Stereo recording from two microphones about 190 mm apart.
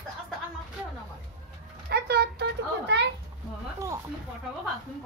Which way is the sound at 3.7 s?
15° right (ahead or behind).